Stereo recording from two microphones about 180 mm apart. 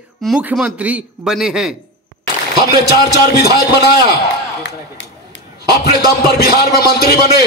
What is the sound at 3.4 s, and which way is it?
Speech, 60° left (ahead or behind).